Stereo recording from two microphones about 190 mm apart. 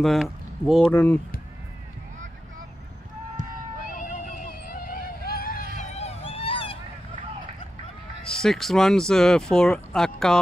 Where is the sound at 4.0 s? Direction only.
45° left (ahead or behind).